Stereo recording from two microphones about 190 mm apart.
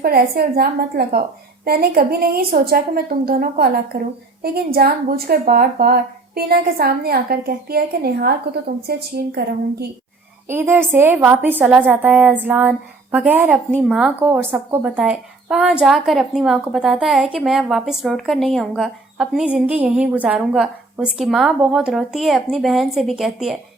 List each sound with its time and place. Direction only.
0.0 s a woman's voice: 55° right (ahead or behind)
10.5 s a woman's voice: 10° right (ahead or behind)